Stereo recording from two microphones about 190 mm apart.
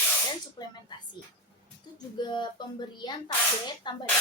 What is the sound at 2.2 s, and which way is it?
Speech, 25° left (ahead or behind).